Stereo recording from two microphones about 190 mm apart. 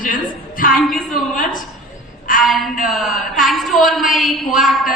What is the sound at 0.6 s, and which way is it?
A woman's voice, 45° left (ahead or behind).